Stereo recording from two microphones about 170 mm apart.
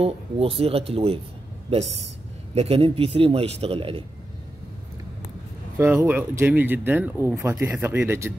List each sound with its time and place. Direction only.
0.0 s a man's voice: 35° right (ahead or behind)
5.8 s speech: 10° right (ahead or behind)